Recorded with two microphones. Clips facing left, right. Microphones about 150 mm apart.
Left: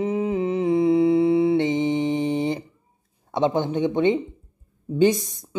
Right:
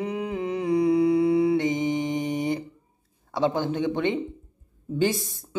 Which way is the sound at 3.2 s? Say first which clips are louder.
Left 3 dB; 20° left (ahead or behind).